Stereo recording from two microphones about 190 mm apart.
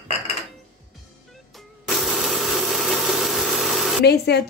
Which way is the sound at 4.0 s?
60° left (ahead or behind).